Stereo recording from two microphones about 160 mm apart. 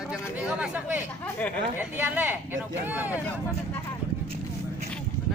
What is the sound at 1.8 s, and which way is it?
Speech, 10° right (ahead or behind).